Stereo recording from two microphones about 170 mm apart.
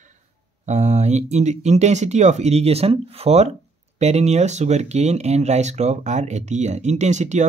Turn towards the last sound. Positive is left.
turn(degrees=-45)  # may be behind; listen again after turning